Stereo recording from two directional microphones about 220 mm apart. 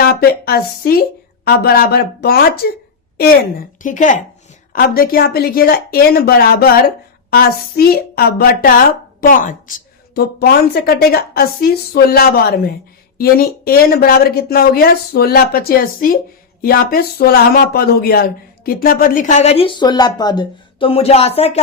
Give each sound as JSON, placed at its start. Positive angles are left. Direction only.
{"t": 0.0, "sound": "speech", "side_deg": 45}
{"t": 3.8, "sound": "speech", "side_deg": 35}